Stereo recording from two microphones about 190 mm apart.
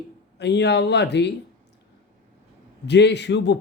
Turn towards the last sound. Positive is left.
turn(degrees=65)  # may be behind; listen again after turning